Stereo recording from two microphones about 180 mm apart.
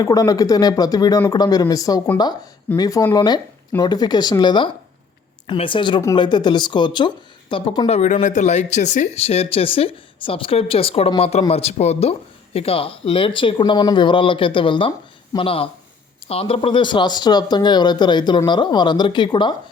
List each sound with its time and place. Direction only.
0.0 s speech: 20° left (ahead or behind)
7.9 s speech: 40° left (ahead or behind)